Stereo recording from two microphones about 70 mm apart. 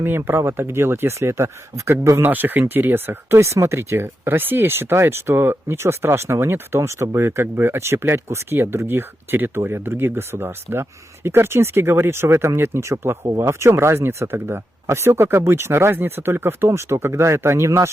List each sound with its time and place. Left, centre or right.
0.0 s speech: right
2.2 s speech: right